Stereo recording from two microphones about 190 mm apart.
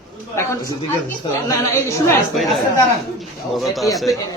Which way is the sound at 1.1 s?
15° left (ahead or behind).